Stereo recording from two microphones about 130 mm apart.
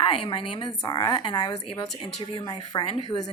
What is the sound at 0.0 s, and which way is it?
A woman's voice, 40° left (ahead or behind).